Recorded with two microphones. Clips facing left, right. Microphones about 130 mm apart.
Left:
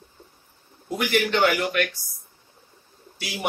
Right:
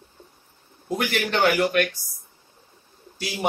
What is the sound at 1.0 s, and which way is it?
Speech, 45° right (ahead or behind).